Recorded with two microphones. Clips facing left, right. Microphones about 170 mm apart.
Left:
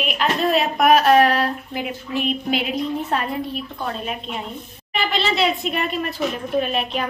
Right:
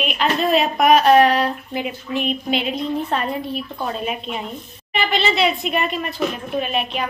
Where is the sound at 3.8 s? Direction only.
10° right (ahead or behind).